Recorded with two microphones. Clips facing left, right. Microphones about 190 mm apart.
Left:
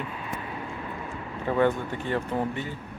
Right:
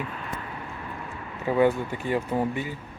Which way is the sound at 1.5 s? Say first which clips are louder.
Right 2 dB; 10° right (ahead or behind).